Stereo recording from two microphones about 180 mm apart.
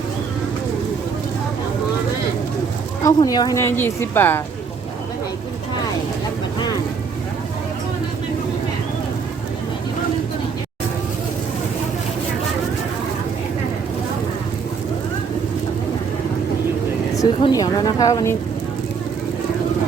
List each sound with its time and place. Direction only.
3.0 s speech: 20° left (ahead or behind)
17.4 s speech: 20° left (ahead or behind)